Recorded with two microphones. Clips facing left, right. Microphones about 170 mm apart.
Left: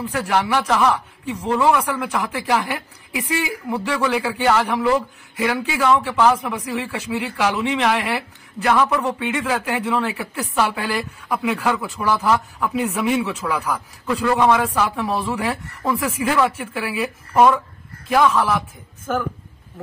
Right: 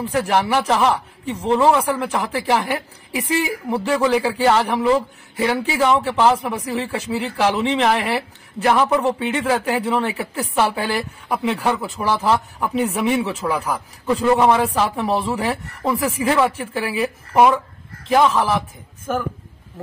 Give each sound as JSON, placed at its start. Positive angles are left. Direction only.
{"t": 0.0, "sound": "a woman's voice", "side_deg": -25}
{"t": 18.1, "sound": "speech", "side_deg": -20}